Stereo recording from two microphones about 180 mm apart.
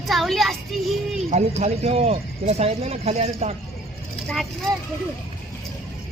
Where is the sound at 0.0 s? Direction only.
Centre (ahead or behind).